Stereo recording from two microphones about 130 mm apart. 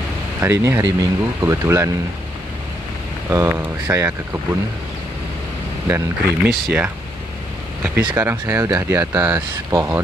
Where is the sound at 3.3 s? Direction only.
20° right (ahead or behind).